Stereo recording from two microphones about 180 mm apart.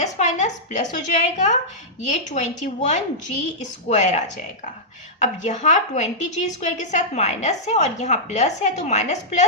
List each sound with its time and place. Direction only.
0.0 s a woman's voice: 40° left (ahead or behind)
5.2 s a woman's voice: 40° left (ahead or behind)